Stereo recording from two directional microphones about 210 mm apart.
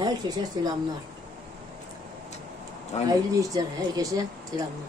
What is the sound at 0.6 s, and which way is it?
Speech, 20° right (ahead or behind).